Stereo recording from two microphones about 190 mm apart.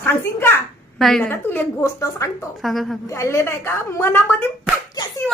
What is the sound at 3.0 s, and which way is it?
A woman's voice, 15° left (ahead or behind).